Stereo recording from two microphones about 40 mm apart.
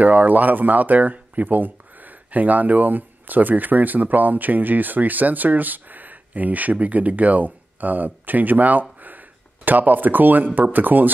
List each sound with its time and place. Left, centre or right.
0.0 s speech: right